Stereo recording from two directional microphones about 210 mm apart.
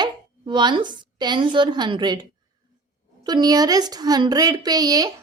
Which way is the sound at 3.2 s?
20° right (ahead or behind).